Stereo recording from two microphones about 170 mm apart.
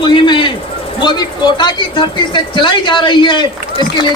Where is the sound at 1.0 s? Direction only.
25° left (ahead or behind).